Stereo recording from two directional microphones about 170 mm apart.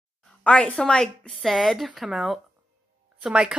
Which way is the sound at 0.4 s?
5° left (ahead or behind).